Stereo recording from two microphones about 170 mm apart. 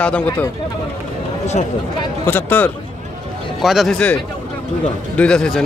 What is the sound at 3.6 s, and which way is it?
Speech, centre (ahead or behind).